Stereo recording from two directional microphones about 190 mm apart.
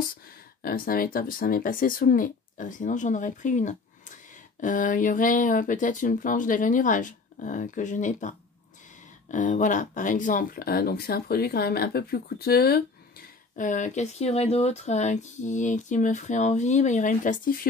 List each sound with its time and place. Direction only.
0.6 s speech: 50° left (ahead or behind)
13.6 s speech: 40° left (ahead or behind)